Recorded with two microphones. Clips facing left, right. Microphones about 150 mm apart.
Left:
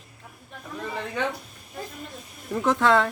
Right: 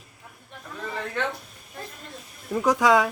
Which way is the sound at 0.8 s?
5° left (ahead or behind).